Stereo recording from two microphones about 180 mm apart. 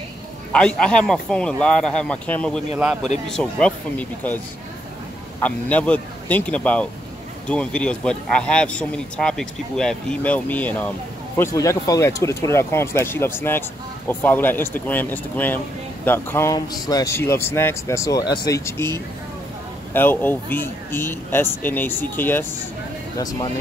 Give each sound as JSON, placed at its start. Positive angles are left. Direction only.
{"t": 0.6, "sound": "speech", "side_deg": 5}
{"t": 2.8, "sound": "speech", "side_deg": -5}
{"t": 5.4, "sound": "speech", "side_deg": 10}
{"t": 19.9, "sound": "speech", "side_deg": 10}